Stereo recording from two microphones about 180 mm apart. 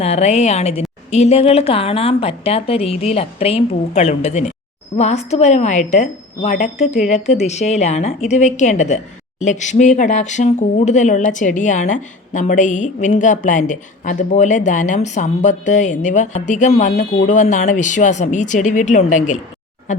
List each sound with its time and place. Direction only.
0.0 s a woman's voice: 35° left (ahead or behind)